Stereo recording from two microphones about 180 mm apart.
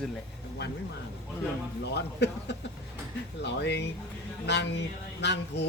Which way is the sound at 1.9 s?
75° left (ahead or behind).